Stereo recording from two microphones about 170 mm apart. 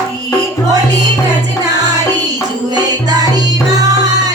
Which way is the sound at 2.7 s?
25° right (ahead or behind).